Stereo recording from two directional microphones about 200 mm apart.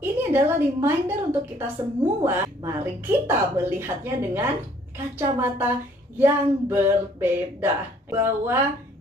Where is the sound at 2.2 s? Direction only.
10° right (ahead or behind).